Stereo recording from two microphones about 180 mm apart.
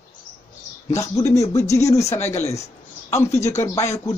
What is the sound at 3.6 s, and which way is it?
Speech, 15° left (ahead or behind).